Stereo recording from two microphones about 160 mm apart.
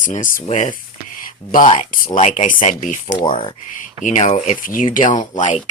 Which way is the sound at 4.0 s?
50° left (ahead or behind).